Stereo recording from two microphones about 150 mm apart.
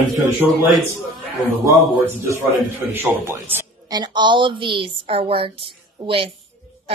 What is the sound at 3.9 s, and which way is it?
A woman's voice, 30° right (ahead or behind).